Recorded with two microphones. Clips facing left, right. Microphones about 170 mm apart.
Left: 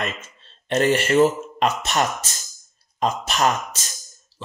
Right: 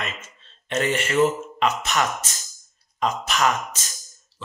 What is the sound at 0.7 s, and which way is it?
Speech, 35° left (ahead or behind).